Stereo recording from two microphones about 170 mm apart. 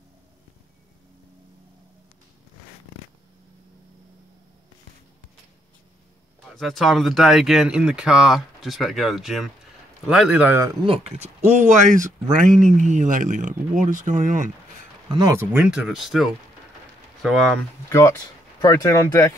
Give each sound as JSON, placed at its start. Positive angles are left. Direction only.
{"t": 6.5, "sound": "a man's voice", "side_deg": 0}
{"t": 10.9, "sound": "speech", "side_deg": -40}
{"t": 15.0, "sound": "speech", "side_deg": -25}
{"t": 15.5, "sound": "speech", "side_deg": -5}
{"t": 17.8, "sound": "speech", "side_deg": 20}